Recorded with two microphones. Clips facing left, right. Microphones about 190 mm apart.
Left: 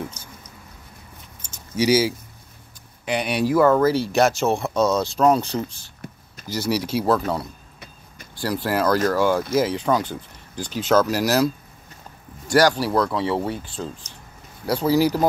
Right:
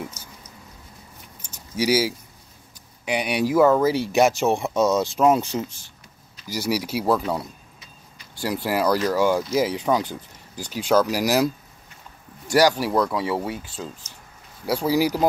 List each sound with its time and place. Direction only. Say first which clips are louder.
1.8 s speech: left 3 dB; 10° right (ahead or behind)
12.5 s speech: left 1 dB; 15° right (ahead or behind)